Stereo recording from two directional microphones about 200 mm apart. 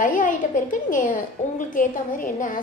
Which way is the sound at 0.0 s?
40° left (ahead or behind).